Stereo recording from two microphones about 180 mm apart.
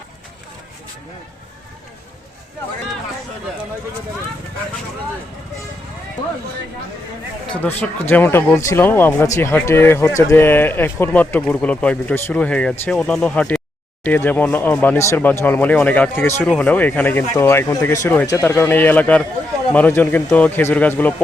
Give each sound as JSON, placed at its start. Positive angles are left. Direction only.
{"t": 7.8, "sound": "speech", "side_deg": 10}